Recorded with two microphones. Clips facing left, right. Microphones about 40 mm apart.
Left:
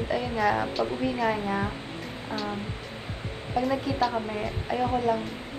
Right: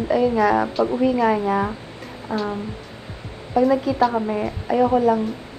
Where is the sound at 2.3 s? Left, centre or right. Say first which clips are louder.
Right 8 dB; right.